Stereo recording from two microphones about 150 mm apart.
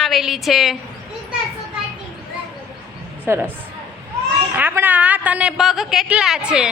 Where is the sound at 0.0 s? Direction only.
Centre (ahead or behind).